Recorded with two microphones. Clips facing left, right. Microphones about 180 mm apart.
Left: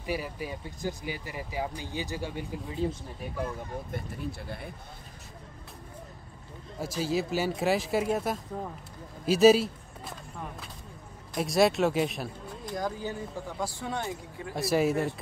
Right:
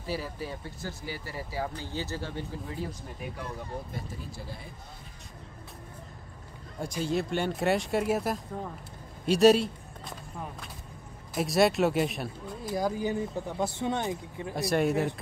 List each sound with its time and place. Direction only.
0.0 s speech: 15° left (ahead or behind)
3.9 s speech: 60° left (ahead or behind)
6.8 s speech: 5° left (ahead or behind)
11.3 s speech: centre (ahead or behind); by 14.5 s 20° right (ahead or behind)
14.5 s speech: centre (ahead or behind)